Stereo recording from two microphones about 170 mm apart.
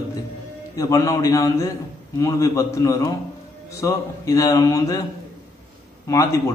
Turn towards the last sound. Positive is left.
turn(degrees=20)  # may be behind; listen again after turning